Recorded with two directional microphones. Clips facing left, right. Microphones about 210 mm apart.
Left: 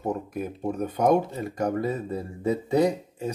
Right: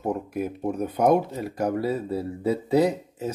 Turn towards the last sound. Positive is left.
turn(degrees=-5)  # may be behind; listen again after turning